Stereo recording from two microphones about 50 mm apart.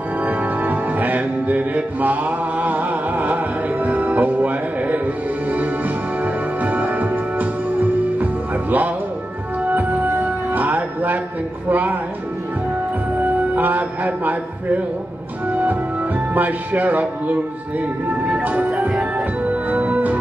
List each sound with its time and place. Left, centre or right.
0.2 s music: right
11.7 s speech: right
13.6 s music: right
16.3 s speech: right
18.4 s music: right